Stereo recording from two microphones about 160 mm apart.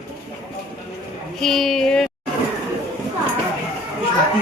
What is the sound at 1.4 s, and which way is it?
Speech, centre (ahead or behind).